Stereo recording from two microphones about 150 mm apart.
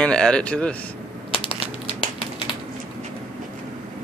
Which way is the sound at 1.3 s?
40° left (ahead or behind).